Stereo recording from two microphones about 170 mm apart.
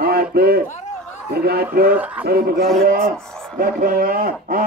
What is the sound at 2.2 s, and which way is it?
A man's voice, 65° right (ahead or behind).